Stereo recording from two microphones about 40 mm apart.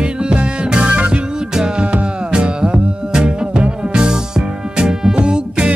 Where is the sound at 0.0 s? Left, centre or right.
Right.